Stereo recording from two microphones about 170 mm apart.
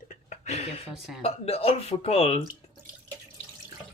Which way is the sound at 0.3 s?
40° left (ahead or behind).